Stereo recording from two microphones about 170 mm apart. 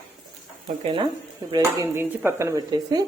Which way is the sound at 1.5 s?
20° right (ahead or behind).